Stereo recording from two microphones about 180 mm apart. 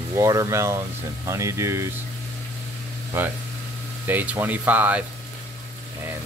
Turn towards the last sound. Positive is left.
turn(degrees=-10)  # may be behind; listen again after turning